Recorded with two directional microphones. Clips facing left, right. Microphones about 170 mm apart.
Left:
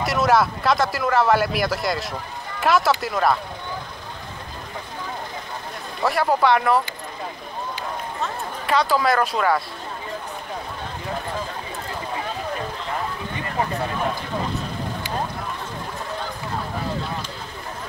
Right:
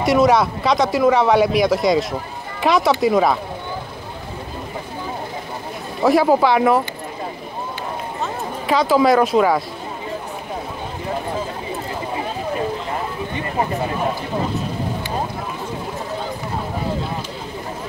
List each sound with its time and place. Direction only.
0.0 s speech: centre (ahead or behind)
6.0 s speech: centre (ahead or behind)
8.2 s speech: centre (ahead or behind)